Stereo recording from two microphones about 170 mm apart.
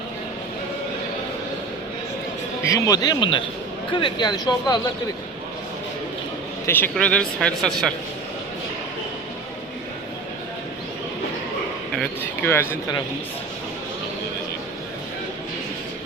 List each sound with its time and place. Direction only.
2.6 s speech: 20° left (ahead or behind)
6.7 s speech: 10° left (ahead or behind)
11.9 s speech: 10° left (ahead or behind)